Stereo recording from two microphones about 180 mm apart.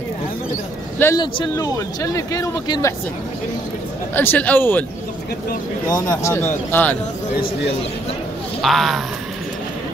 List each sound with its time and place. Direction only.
0.9 s a man's voice: 15° left (ahead or behind)
4.1 s speech: 10° left (ahead or behind)
5.9 s speech: 20° left (ahead or behind)
8.6 s speech: centre (ahead or behind)